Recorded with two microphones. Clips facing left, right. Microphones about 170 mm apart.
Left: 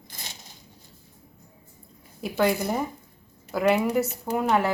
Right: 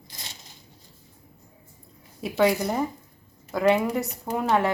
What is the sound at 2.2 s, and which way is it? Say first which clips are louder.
A woman's voice: right 2 dB; centre (ahead or behind).